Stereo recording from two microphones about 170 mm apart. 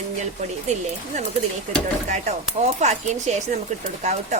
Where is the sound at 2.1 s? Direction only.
45° right (ahead or behind).